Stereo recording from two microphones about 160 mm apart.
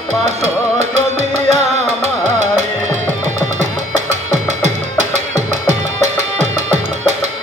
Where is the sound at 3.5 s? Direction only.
50° right (ahead or behind).